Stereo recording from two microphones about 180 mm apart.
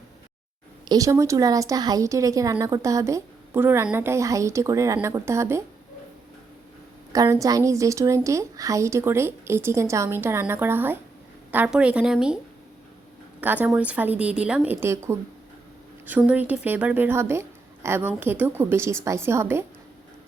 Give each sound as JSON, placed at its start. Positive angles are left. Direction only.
{"t": 0.9, "sound": "speech", "side_deg": -20}
{"t": 7.1, "sound": "a woman's voice", "side_deg": -20}
{"t": 13.4, "sound": "speech", "side_deg": -10}